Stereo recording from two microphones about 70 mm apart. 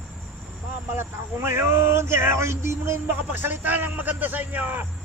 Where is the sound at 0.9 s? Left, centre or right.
Right.